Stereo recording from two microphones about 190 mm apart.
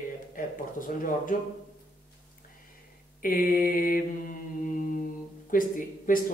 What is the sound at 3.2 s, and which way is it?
A man's voice, 50° left (ahead or behind).